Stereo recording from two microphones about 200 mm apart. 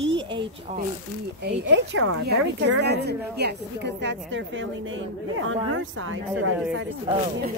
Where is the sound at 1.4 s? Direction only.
60° right (ahead or behind); by 2.2 s 75° right (ahead or behind).